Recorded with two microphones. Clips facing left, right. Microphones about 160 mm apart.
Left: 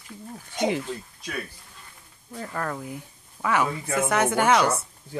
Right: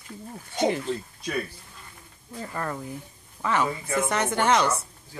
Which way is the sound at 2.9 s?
10° left (ahead or behind).